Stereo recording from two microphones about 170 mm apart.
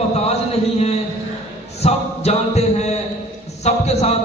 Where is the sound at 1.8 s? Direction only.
40° left (ahead or behind).